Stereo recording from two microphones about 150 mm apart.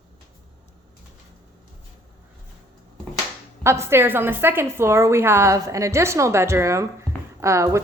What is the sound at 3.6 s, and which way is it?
A woman's voice, 15° right (ahead or behind).